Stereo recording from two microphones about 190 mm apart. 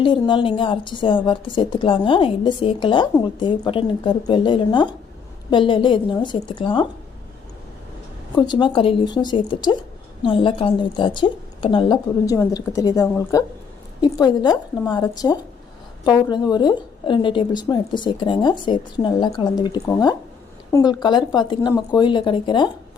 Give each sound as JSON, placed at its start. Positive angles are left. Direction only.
{"t": 0.0, "sound": "a woman's voice", "side_deg": 25}
{"t": 8.4, "sound": "a woman's voice", "side_deg": 25}